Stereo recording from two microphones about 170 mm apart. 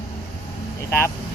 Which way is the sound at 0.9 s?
15° left (ahead or behind).